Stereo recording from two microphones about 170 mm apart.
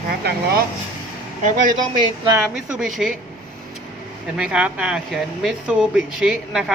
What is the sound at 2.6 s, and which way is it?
Speech, 5° right (ahead or behind).